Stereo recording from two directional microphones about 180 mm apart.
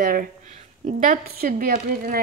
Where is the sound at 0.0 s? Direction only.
55° right (ahead or behind).